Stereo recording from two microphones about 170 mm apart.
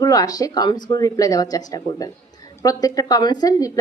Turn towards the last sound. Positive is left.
turn(degrees=20)  # may be behind; listen again after turning